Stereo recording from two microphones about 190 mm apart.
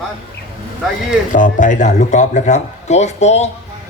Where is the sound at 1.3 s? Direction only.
45° left (ahead or behind).